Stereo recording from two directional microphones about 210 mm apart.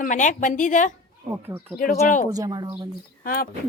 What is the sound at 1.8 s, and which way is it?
Speech, 40° left (ahead or behind).